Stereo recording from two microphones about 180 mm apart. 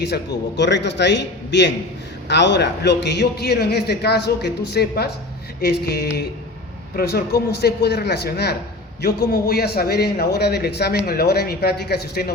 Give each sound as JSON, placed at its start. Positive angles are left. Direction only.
{"t": 0.0, "sound": "a man's voice", "side_deg": 70}